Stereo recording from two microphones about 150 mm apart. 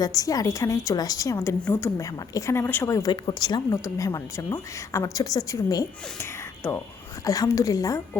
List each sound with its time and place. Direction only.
0.0 s a woman's voice: 25° left (ahead or behind)